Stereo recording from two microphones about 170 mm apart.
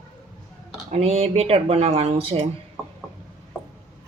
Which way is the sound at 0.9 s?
40° right (ahead or behind).